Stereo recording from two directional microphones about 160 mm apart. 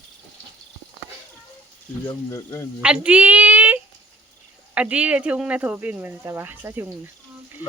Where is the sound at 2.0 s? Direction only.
20° left (ahead or behind).